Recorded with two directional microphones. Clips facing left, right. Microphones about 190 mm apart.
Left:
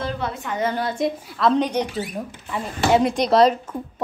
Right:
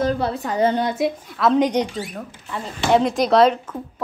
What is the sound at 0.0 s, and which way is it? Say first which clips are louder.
Speech: right 6 dB; 40° right (ahead or behind).